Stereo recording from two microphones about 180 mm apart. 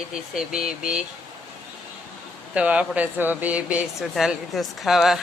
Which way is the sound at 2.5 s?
5° right (ahead or behind).